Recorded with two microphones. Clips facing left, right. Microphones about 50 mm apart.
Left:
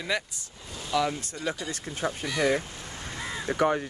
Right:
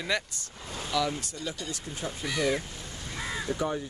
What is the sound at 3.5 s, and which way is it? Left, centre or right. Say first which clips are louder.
Speech: left 7 dB; left.